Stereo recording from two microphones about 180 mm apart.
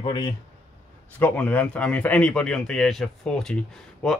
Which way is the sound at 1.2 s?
10° left (ahead or behind).